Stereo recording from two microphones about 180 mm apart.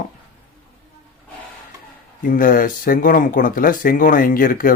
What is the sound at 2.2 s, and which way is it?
Speech, 50° left (ahead or behind).